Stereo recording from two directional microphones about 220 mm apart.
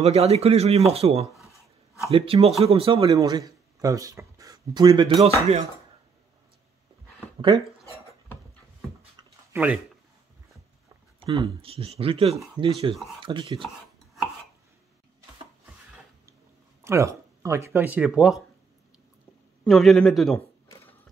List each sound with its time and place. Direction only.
0.0 s speech: 30° right (ahead or behind)
9.5 s speech: 5° right (ahead or behind)
11.1 s speech: 25° right (ahead or behind)
16.8 s speech: 15° right (ahead or behind)
19.6 s a man's voice: centre (ahead or behind)
20.3 s a sound: 10° left (ahead or behind)